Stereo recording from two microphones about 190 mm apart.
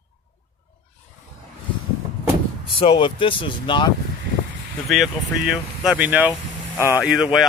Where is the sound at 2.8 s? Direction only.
25° left (ahead or behind).